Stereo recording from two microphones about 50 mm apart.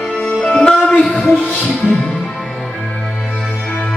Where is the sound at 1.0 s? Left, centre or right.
Centre.